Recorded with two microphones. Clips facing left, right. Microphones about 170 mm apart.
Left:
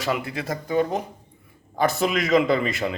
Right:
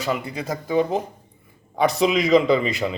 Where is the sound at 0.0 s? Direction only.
Centre (ahead or behind).